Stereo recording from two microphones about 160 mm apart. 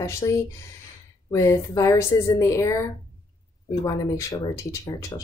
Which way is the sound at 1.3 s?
20° left (ahead or behind).